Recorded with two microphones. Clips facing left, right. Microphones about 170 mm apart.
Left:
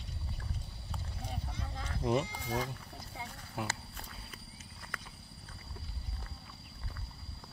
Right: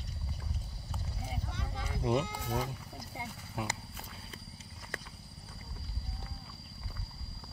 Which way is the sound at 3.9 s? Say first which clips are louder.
Right 1 dB; 5° right (ahead or behind).